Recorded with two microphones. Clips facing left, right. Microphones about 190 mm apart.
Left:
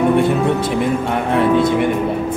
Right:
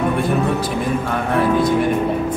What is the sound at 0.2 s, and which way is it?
Speech, 25° left (ahead or behind).